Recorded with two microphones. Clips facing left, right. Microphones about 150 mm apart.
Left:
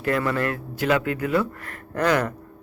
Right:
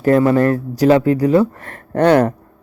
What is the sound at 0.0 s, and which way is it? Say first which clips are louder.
A man's voice: right 11 dB; 35° right (ahead or behind).